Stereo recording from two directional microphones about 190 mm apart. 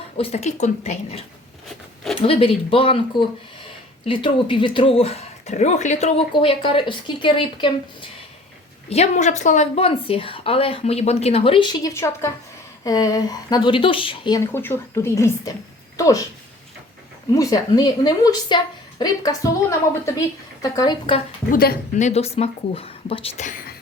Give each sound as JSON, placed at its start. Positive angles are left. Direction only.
{"t": 0.2, "sound": "a woman's voice", "side_deg": 35}
{"t": 2.2, "sound": "a woman's voice", "side_deg": 30}
{"t": 17.3, "sound": "speech", "side_deg": 20}
{"t": 21.5, "sound": "a woman's voice", "side_deg": 50}